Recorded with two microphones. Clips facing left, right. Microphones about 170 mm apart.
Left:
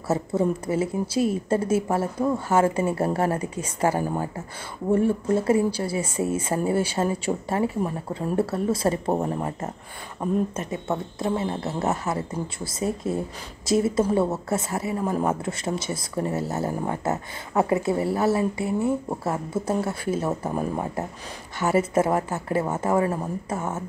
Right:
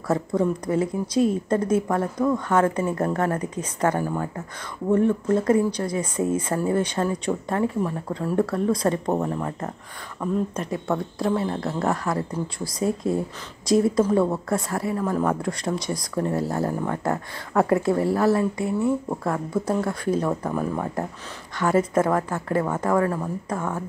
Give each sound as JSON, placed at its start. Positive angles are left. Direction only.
{"t": 0.1, "sound": "speech", "side_deg": 5}
{"t": 9.2, "sound": "a woman's voice", "side_deg": 20}
{"t": 10.5, "sound": "speech", "side_deg": 5}
{"t": 15.0, "sound": "a woman's voice", "side_deg": 20}
{"t": 15.4, "sound": "speech", "side_deg": 5}
{"t": 19.6, "sound": "a woman's voice", "side_deg": 25}
{"t": 19.9, "sound": "speech", "side_deg": 5}
{"t": 20.2, "sound": "a woman's voice", "side_deg": 25}
{"t": 21.5, "sound": "speech", "side_deg": 5}
{"t": 23.0, "sound": "a woman's voice", "side_deg": 20}